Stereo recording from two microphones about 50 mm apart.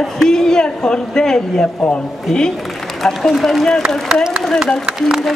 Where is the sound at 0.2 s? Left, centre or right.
Centre.